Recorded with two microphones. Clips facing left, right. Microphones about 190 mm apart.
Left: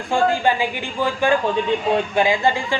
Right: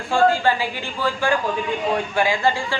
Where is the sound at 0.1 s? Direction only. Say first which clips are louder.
Right 1 dB; 15° left (ahead or behind).